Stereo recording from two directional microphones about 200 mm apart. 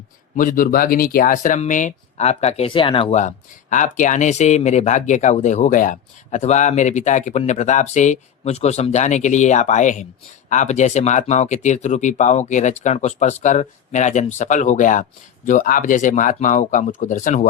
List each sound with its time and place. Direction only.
0.3 s speech: 45° left (ahead or behind)